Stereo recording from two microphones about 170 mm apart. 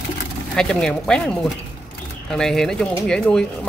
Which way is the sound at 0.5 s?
5° left (ahead or behind).